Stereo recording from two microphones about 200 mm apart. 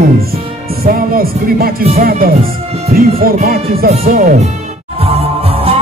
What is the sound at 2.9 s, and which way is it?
Music, 45° right (ahead or behind).